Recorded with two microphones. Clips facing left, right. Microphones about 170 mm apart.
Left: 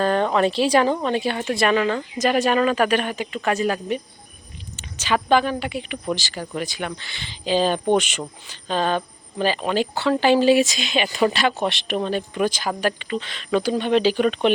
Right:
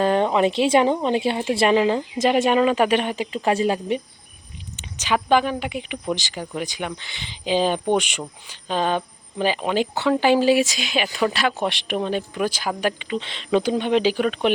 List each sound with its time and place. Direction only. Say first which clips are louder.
0.0 s speech: right 1 dB; 20° right (ahead or behind)
4.8 s speech: even; 15° right (ahead or behind)